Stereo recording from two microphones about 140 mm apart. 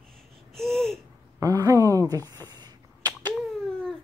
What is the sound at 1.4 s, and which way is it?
Speech, 25° right (ahead or behind).